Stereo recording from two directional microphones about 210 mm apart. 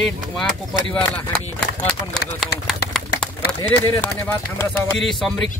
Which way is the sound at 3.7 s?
10° left (ahead or behind).